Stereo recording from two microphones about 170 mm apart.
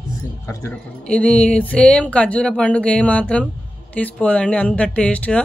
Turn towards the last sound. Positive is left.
turn(degrees=5)  # may be behind; listen again after turning